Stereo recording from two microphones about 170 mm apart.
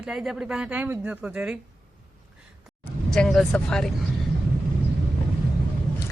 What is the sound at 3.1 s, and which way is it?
Speech, centre (ahead or behind).